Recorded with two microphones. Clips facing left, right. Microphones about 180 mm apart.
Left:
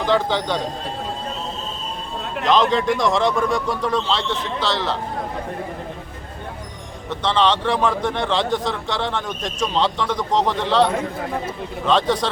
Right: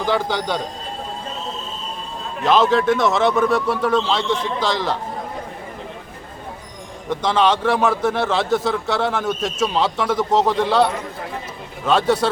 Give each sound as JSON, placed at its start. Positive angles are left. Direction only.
{"t": 0.0, "sound": "a man's voice", "side_deg": -10}
{"t": 2.4, "sound": "a man's voice", "side_deg": -5}
{"t": 7.1, "sound": "a man's voice", "side_deg": -10}